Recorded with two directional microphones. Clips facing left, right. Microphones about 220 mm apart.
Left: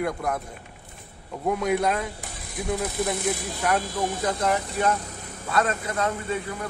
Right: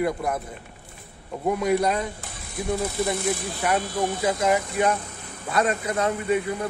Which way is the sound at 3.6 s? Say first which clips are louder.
Right 1 dB; 10° right (ahead or behind).